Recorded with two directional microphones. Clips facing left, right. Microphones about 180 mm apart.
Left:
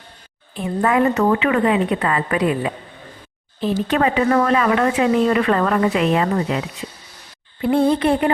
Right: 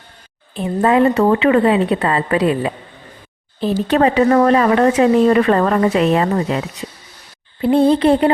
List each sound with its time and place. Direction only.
0.5 s a woman's voice: 25° right (ahead or behind)
3.8 s a woman's voice: 35° right (ahead or behind)
7.6 s a woman's voice: 30° right (ahead or behind)